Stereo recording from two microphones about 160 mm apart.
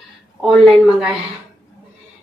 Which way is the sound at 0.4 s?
Centre (ahead or behind).